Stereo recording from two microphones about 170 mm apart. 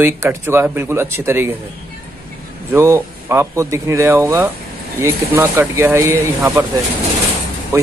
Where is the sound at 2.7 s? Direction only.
15° right (ahead or behind).